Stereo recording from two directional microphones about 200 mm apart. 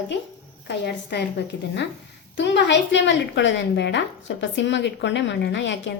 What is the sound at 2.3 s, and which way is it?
A woman's voice, 60° left (ahead or behind).